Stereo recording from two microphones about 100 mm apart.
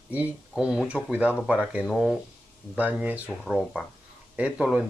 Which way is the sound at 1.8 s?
Centre (ahead or behind).